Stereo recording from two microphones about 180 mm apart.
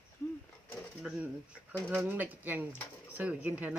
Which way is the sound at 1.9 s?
10° right (ahead or behind).